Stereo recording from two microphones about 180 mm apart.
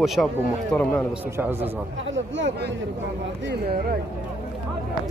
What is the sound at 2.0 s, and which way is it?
Speech, 90° right.